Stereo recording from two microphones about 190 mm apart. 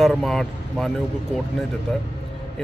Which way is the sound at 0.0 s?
Centre (ahead or behind).